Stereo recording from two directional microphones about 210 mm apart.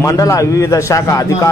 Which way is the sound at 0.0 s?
15° left (ahead or behind).